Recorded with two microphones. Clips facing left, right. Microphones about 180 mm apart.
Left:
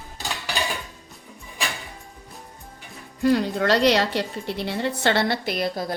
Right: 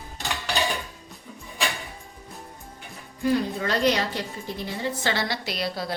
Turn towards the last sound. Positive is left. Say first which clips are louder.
# left 4 dB
turn(degrees=50)  # may be behind; listen again after turning